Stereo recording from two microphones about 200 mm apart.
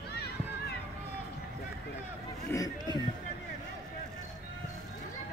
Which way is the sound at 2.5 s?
15° left (ahead or behind).